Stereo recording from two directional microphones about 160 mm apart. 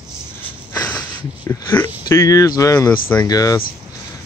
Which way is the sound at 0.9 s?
10° left (ahead or behind).